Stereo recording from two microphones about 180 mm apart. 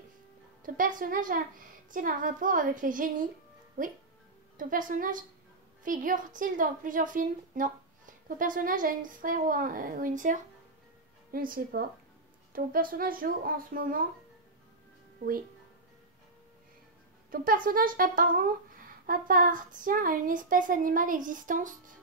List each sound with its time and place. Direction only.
0.7 s speech: 50° right (ahead or behind)
4.6 s speech: 50° right (ahead or behind)
17.3 s speech: 50° right (ahead or behind)